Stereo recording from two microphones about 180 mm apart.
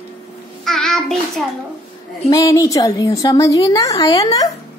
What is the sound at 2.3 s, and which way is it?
A woman's voice, 20° left (ahead or behind).